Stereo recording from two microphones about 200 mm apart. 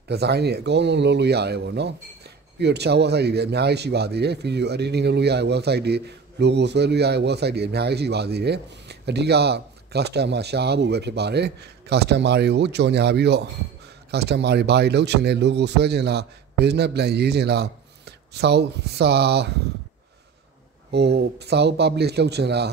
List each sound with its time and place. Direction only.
0.1 s speech: 55° right (ahead or behind)
20.9 s speech: 55° right (ahead or behind)